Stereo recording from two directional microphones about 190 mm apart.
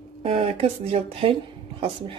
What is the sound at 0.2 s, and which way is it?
A woman's voice, 30° right (ahead or behind).